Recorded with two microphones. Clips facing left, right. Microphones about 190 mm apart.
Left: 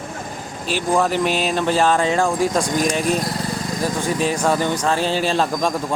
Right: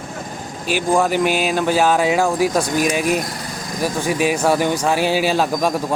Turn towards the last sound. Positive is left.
turn(degrees=-5)  # may be behind; listen again after turning